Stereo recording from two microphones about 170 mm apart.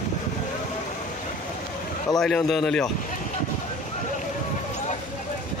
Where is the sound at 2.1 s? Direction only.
5° left (ahead or behind).